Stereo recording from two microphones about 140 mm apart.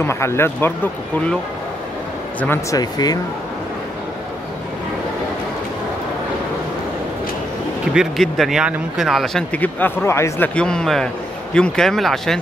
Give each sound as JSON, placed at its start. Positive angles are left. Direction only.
{"t": 0.0, "sound": "speech", "side_deg": 20}
{"t": 2.4, "sound": "speech", "side_deg": 15}
{"t": 2.8, "sound": "speech", "side_deg": 30}
{"t": 7.9, "sound": "speech", "side_deg": 0}
{"t": 10.5, "sound": "speech", "side_deg": 5}